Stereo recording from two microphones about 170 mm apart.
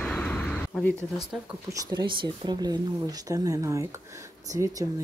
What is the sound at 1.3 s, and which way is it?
Speech, centre (ahead or behind).